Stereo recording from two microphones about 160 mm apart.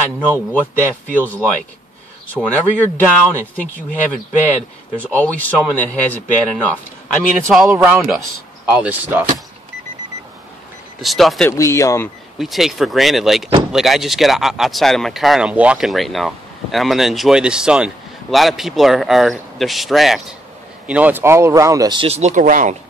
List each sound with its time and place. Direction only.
0.5 s speech: 10° left (ahead or behind)
8.6 s speech: 10° right (ahead or behind)
11.0 s speech: centre (ahead or behind)
11.5 s speech: 20° left (ahead or behind)
12.4 s speech: centre (ahead or behind); by 22.0 s 25° right (ahead or behind)
22.0 s speech: 40° right (ahead or behind)